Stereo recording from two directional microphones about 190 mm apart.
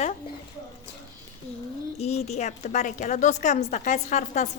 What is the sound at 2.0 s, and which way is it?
A woman's voice, 35° left (ahead or behind).